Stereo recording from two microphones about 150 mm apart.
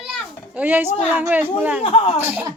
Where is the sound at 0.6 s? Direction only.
10° right (ahead or behind).